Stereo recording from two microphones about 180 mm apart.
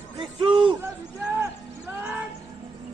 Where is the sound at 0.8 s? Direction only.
5° right (ahead or behind).